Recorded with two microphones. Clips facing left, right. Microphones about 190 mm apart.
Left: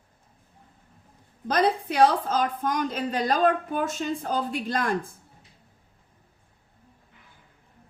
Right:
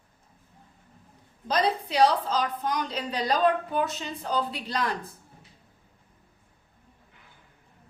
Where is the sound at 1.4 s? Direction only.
55° left (ahead or behind).